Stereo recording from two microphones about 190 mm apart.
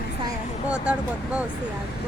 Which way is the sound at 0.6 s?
5° right (ahead or behind).